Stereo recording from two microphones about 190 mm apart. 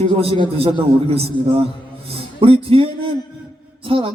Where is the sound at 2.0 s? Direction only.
30° right (ahead or behind).